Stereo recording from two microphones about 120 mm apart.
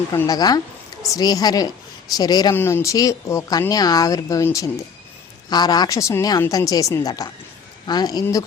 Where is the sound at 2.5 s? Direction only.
20° left (ahead or behind).